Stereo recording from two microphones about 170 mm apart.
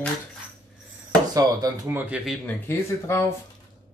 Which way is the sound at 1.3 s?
20° right (ahead or behind).